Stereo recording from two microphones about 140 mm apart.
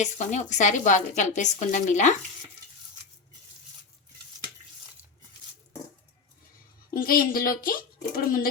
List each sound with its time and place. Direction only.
0.0 s a woman's voice: 60° left (ahead or behind)
6.9 s speech: 90° left